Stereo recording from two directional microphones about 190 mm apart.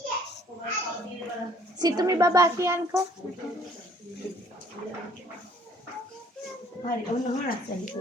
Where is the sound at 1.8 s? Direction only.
20° right (ahead or behind).